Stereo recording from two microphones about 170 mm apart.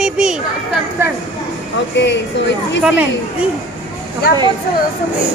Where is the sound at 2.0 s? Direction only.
90° left.